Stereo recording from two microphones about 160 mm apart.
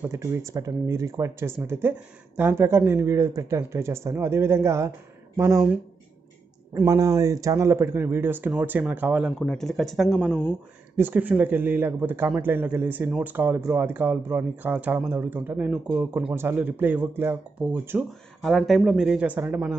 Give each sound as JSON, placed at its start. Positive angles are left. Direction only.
{"t": 0.0, "sound": "speech", "side_deg": -15}
{"t": 6.7, "sound": "speech", "side_deg": -15}
{"t": 9.4, "sound": "speech", "side_deg": 5}
{"t": 18.4, "sound": "speech", "side_deg": 0}